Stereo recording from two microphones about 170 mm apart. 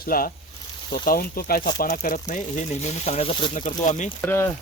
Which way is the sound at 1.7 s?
45° left (ahead or behind).